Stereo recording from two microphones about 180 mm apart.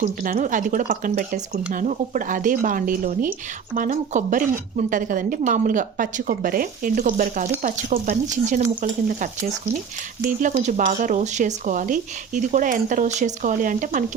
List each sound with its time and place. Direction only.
0.0 s a woman's voice: 50° right (ahead or behind)